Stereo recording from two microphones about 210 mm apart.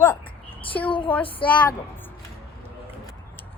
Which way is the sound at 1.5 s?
10° left (ahead or behind).